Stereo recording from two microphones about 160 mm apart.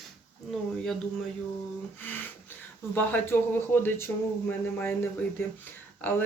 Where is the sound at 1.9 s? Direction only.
10° left (ahead or behind).